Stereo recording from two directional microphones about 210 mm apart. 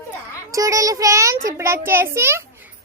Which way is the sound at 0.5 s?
15° right (ahead or behind).